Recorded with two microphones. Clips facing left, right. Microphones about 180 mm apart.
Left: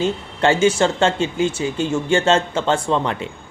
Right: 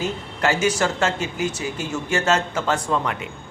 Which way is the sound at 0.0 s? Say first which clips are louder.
Left 5 dB; 30° left (ahead or behind).